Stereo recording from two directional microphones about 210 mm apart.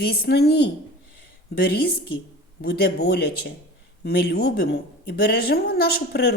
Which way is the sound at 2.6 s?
50° left (ahead or behind).